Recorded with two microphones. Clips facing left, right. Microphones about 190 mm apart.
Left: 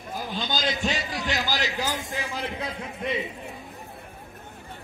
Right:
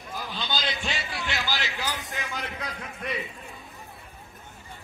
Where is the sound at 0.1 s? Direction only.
45° left (ahead or behind); by 3.3 s 25° left (ahead or behind).